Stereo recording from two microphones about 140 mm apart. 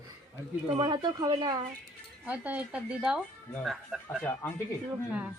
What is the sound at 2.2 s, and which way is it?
Speech, 10° right (ahead or behind).